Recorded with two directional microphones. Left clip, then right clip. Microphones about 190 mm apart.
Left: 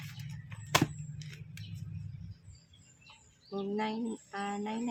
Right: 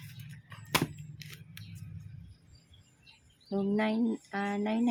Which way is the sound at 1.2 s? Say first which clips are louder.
Right 4 dB; 20° right (ahead or behind).